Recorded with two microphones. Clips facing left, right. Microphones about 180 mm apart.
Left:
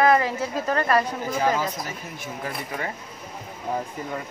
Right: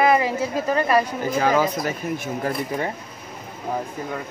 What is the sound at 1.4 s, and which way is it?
Speech, 90° right.